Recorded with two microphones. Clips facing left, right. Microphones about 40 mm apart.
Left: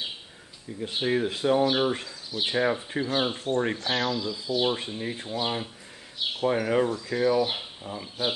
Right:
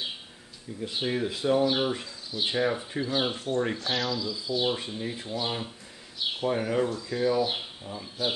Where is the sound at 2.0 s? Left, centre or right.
Left.